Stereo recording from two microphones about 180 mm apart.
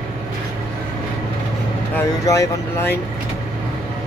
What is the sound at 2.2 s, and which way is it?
Speech, 15° left (ahead or behind).